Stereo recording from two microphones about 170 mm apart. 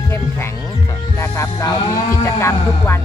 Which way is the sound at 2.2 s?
15° left (ahead or behind).